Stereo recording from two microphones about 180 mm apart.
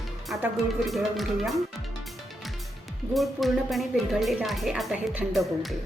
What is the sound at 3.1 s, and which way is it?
Speech, centre (ahead or behind).